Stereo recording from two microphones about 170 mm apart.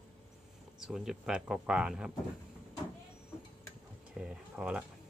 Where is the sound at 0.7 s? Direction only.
5° right (ahead or behind).